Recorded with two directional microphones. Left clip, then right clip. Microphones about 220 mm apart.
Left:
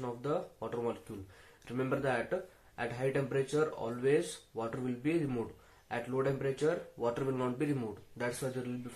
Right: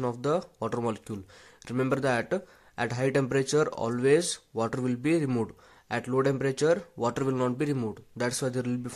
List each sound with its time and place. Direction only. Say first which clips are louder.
0.0 s speech: right 8 dB; 50° right (ahead or behind)